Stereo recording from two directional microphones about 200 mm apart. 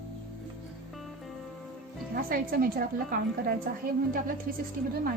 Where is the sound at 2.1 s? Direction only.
50° right (ahead or behind).